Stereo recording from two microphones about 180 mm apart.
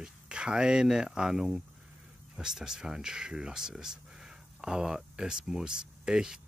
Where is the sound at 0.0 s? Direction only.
5° right (ahead or behind).